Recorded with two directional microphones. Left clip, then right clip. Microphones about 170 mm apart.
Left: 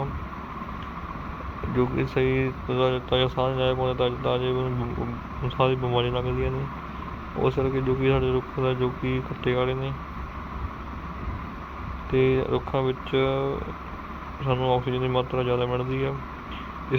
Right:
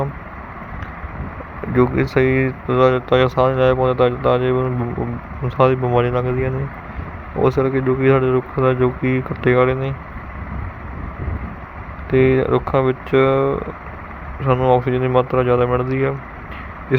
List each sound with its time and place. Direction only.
1.7 s speech: 25° right (ahead or behind)
5.5 s speech: 25° right (ahead or behind)
12.1 s speech: 20° right (ahead or behind)